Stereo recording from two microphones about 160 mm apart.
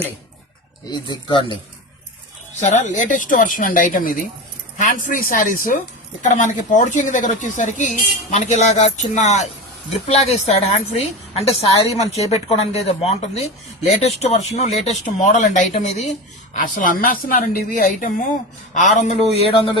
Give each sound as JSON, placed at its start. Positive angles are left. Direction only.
{"t": 0.9, "sound": "speech", "side_deg": 25}
{"t": 2.6, "sound": "a woman's voice", "side_deg": 50}
{"t": 16.6, "sound": "a woman's voice", "side_deg": 60}